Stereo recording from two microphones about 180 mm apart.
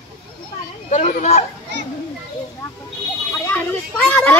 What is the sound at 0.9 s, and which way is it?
Children playing, 45° left (ahead or behind).